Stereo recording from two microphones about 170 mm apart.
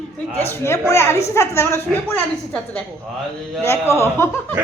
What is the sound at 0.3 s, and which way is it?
A woman's voice, 15° left (ahead or behind).